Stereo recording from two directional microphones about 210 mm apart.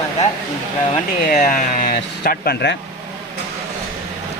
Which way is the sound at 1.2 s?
45° left (ahead or behind).